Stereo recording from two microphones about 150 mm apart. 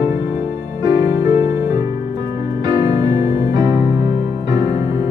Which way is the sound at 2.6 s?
25° right (ahead or behind).